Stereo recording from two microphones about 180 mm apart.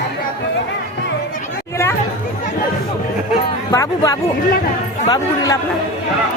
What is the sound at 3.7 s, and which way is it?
Speech, 20° left (ahead or behind).